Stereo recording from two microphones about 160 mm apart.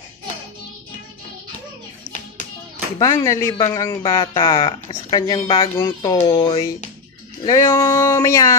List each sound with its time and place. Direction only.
3.0 s speech: 20° left (ahead or behind)